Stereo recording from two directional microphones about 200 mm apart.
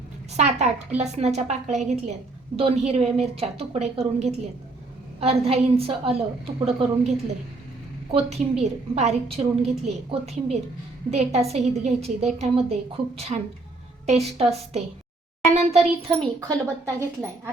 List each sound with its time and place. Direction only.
0.3 s a woman's voice: 35° right (ahead or behind)
8.1 s a woman's voice: 30° right (ahead or behind)
16.5 s speech: 15° right (ahead or behind)